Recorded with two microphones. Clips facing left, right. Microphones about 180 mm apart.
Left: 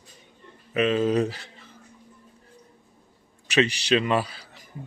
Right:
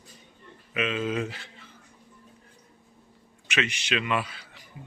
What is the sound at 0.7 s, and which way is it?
Speech, 40° left (ahead or behind).